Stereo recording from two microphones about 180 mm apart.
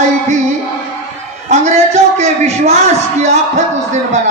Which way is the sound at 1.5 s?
40° right (ahead or behind).